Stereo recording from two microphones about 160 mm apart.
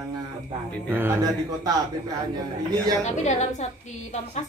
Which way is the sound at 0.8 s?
15° right (ahead or behind).